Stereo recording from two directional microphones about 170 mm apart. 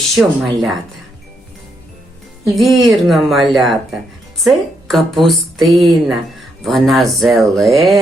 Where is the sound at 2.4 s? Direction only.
Centre (ahead or behind).